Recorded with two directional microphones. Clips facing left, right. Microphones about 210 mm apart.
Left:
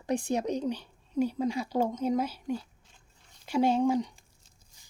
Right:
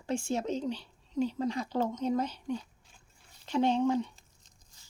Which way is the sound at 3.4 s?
10° left (ahead or behind).